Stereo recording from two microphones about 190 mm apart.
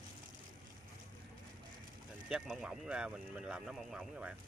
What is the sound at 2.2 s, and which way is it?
Speech, 5° right (ahead or behind).